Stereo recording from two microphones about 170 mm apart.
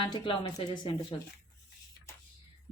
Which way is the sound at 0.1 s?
25° left (ahead or behind).